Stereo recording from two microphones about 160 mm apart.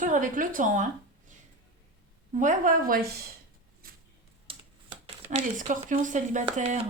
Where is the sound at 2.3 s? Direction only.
50° right (ahead or behind).